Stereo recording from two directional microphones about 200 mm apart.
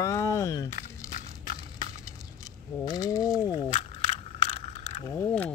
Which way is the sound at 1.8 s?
15° left (ahead or behind).